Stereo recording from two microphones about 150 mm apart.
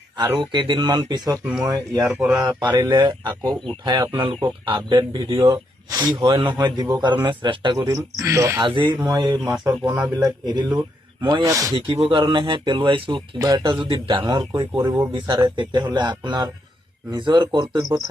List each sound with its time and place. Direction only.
0.3 s speech: 35° right (ahead or behind)
2.0 s speech: 5° right (ahead or behind)
2.4 s speech: 25° right (ahead or behind)
7.8 s speech: 20° right (ahead or behind)
8.6 s speech: 30° right (ahead or behind)
11.9 s speech: 35° right (ahead or behind)